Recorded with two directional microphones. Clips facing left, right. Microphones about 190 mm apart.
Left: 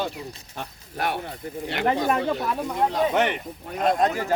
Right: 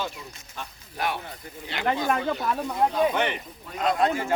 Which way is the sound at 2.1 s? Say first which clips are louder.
Left 2 dB; 30° left (ahead or behind).